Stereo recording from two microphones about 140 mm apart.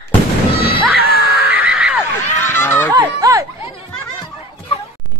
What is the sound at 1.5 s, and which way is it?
Neigh, 10° right (ahead or behind).